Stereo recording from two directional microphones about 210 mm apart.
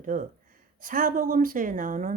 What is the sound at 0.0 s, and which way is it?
Speech, 40° right (ahead or behind).